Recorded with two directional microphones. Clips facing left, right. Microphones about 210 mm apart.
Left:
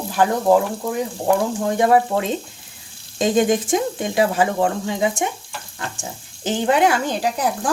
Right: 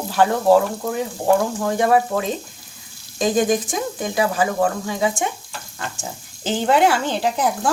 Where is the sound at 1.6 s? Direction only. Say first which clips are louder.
Left 1 dB; 25° left (ahead or behind).